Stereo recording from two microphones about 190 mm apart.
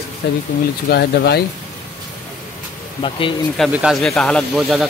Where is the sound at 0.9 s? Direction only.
55° left (ahead or behind).